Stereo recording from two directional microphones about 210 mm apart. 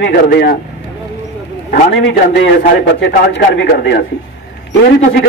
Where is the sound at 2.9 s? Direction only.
55° left (ahead or behind).